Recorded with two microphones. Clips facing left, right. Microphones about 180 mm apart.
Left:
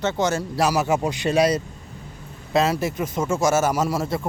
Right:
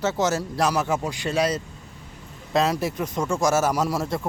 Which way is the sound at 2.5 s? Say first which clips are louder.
Left 2 dB; 5° left (ahead or behind).